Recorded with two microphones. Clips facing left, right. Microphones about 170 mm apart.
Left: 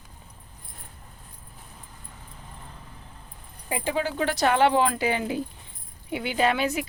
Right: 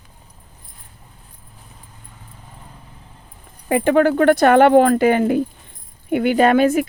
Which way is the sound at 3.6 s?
65° right (ahead or behind).